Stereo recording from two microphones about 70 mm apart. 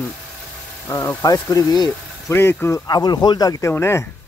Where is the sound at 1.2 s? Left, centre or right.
Left.